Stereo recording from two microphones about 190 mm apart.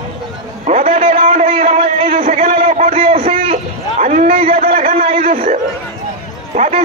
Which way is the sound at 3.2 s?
30° right (ahead or behind).